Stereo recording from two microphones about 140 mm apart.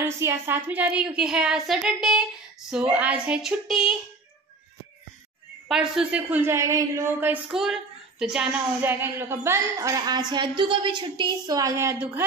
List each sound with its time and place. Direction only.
0.0 s a woman's voice: 20° right (ahead or behind); by 3.9 s centre (ahead or behind)
5.7 s a woman's voice: 5° right (ahead or behind)
7.5 s a child's voice: 5° right (ahead or behind)
8.8 s a woman's voice: 15° right (ahead or behind)